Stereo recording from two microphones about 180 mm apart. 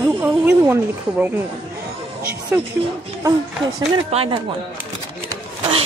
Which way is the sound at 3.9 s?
30° right (ahead or behind).